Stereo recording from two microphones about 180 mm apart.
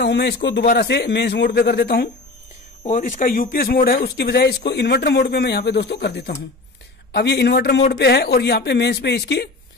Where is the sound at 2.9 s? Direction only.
50° left (ahead or behind).